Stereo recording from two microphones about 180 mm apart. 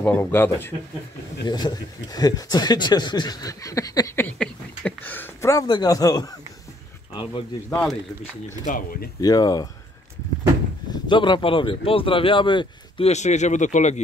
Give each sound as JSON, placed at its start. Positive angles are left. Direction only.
{"t": 0.0, "sound": "speech", "side_deg": 10}
{"t": 1.5, "sound": "speech", "side_deg": 20}
{"t": 7.7, "sound": "speech", "side_deg": 5}
{"t": 8.5, "sound": "speech", "side_deg": 45}
{"t": 9.2, "sound": "speech", "side_deg": 20}
{"t": 10.9, "sound": "speech", "side_deg": 25}